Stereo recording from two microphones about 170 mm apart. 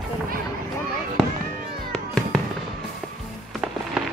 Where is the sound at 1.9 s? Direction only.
5° left (ahead or behind).